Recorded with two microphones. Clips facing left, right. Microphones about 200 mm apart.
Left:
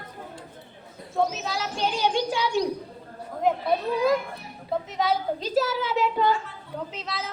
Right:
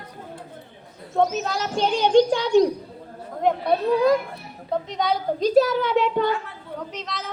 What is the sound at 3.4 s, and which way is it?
A woman's voice, 5° left (ahead or behind).